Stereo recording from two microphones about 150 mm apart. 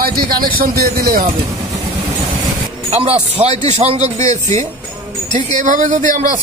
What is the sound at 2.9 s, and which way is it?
A man's voice, 40° right (ahead or behind).